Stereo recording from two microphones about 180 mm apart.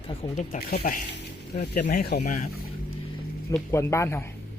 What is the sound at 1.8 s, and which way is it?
Speech, 60° left (ahead or behind).